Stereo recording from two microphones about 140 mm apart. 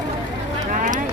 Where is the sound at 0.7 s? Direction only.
70° right (ahead or behind).